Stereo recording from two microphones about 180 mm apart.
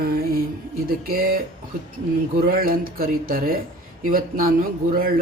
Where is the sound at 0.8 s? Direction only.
50° right (ahead or behind).